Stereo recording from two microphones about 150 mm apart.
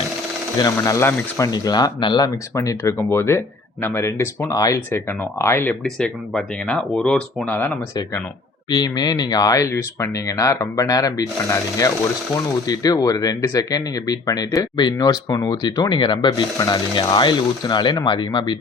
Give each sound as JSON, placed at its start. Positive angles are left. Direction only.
{"t": 0.6, "sound": "speech", "side_deg": 20}
{"t": 5.8, "sound": "speech", "side_deg": 5}
{"t": 8.7, "sound": "speech", "side_deg": 25}
{"t": 12.6, "sound": "speech", "side_deg": 25}